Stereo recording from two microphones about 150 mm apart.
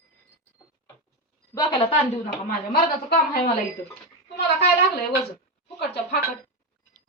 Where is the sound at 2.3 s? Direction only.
85° left.